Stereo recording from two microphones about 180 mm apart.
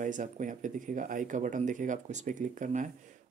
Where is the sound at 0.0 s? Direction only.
45° right (ahead or behind).